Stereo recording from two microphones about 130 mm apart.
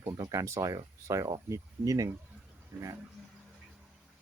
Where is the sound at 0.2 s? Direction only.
25° right (ahead or behind).